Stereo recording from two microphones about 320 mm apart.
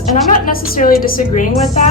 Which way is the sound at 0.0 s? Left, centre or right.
Left.